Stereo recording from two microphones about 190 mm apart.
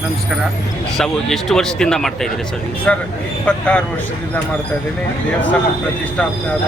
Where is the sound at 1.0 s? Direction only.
Centre (ahead or behind).